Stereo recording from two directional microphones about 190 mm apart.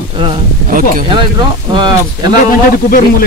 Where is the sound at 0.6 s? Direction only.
45° right (ahead or behind).